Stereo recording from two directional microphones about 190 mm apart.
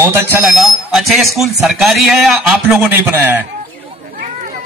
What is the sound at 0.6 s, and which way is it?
Speech, centre (ahead or behind).